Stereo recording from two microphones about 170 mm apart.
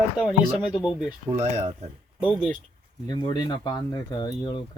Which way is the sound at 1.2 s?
40° right (ahead or behind).